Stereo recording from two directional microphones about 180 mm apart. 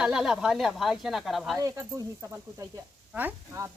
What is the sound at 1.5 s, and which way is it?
Speech, 15° right (ahead or behind).